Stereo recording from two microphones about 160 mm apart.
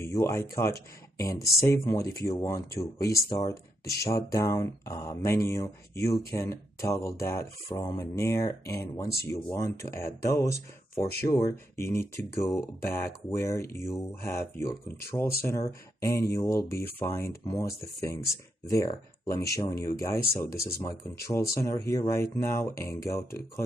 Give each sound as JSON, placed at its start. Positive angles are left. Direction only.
{"t": 0.0, "sound": "speech", "side_deg": 15}
{"t": 11.2, "sound": "speech", "side_deg": 15}